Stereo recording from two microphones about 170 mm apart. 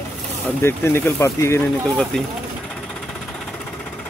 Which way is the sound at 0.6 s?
15° left (ahead or behind).